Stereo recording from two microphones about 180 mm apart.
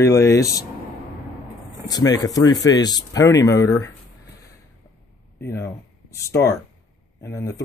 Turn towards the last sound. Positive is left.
turn(degrees=15)  # may be behind; listen again after turning